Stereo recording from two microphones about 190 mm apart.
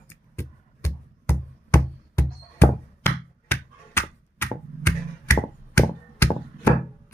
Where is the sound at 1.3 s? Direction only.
15° left (ahead or behind).